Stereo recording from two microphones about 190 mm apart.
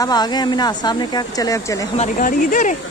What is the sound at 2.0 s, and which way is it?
Speech, 45° left (ahead or behind).